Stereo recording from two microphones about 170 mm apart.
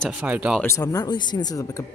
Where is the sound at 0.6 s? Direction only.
20° left (ahead or behind).